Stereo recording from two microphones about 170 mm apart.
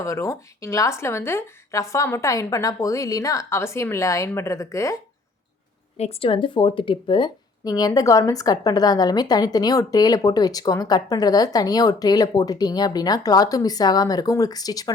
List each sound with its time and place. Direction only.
0.0 s speech: 20° left (ahead or behind)
6.0 s speech: 35° left (ahead or behind)